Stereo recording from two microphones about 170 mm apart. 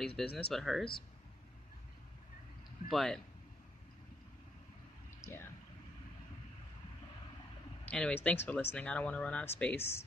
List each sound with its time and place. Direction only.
0.0 s speech: 5° left (ahead or behind)
2.9 s speech: centre (ahead or behind)
5.2 s a sound: 15° left (ahead or behind)
7.9 s speech: 10° left (ahead or behind)